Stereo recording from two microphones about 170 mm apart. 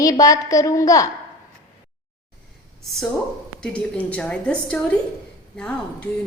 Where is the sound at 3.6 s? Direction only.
10° left (ahead or behind).